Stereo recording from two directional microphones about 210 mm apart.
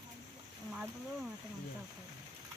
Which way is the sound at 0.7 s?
5° right (ahead or behind).